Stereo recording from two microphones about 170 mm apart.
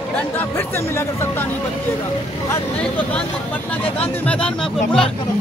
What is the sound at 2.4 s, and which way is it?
Speech, 10° left (ahead or behind).